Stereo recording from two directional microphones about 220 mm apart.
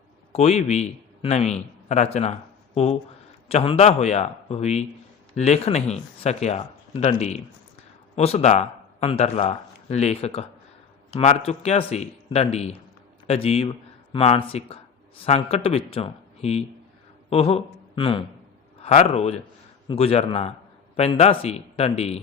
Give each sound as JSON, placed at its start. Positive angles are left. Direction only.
{"t": 0.3, "sound": "a man's voice", "side_deg": 30}